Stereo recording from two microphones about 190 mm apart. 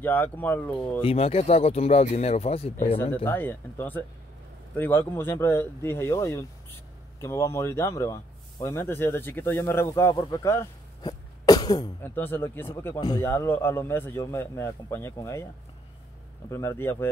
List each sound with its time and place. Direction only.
0.0 s speech: 10° left (ahead or behind)
1.0 s speech: 30° left (ahead or behind)
3.3 s speech: 10° left (ahead or behind)
16.4 s speech: 15° left (ahead or behind)